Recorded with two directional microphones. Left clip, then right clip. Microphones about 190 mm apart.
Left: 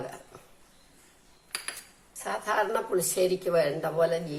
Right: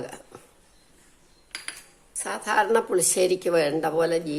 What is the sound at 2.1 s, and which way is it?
A woman's voice, 55° right (ahead or behind).